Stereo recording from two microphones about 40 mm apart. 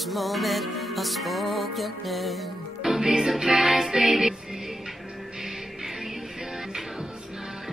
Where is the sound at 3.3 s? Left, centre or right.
Centre.